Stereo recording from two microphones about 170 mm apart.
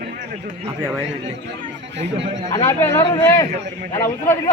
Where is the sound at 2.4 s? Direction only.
20° left (ahead or behind).